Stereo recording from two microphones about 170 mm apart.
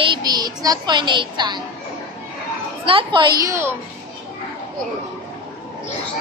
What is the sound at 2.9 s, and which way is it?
Speech, 30° right (ahead or behind).